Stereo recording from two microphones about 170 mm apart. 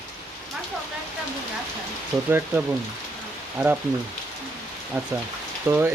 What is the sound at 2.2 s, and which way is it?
Speech, 10° right (ahead or behind).